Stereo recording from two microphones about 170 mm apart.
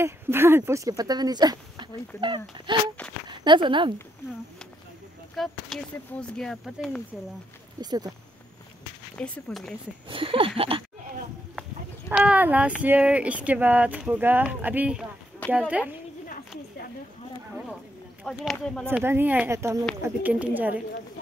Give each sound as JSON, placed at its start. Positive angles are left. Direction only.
{"t": 0.0, "sound": "speech", "side_deg": -15}
{"t": 5.3, "sound": "speech", "side_deg": 0}
{"t": 7.8, "sound": "speech", "side_deg": -25}
{"t": 9.1, "sound": "speech", "side_deg": 5}
{"t": 10.0, "sound": "speech", "side_deg": -30}
{"t": 12.1, "sound": "speech", "side_deg": -5}
{"t": 18.2, "sound": "speech", "side_deg": 0}
{"t": 18.9, "sound": "speech", "side_deg": -15}